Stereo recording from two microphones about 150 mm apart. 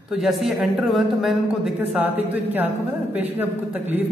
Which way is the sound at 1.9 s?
10° right (ahead or behind).